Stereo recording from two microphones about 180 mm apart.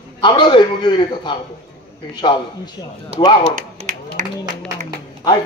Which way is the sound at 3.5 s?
50° right (ahead or behind).